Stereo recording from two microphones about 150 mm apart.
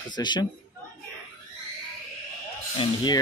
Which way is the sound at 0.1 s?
30° left (ahead or behind).